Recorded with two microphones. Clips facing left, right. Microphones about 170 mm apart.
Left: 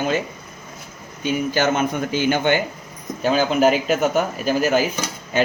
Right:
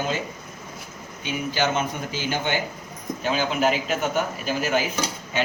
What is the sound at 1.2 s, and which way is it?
A man's voice, 50° left (ahead or behind).